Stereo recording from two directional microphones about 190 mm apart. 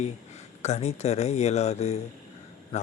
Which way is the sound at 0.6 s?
35° left (ahead or behind).